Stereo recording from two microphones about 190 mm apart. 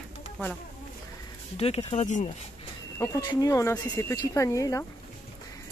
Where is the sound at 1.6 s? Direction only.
30° left (ahead or behind).